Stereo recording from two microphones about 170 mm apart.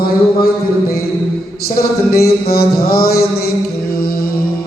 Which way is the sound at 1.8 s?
65° left (ahead or behind).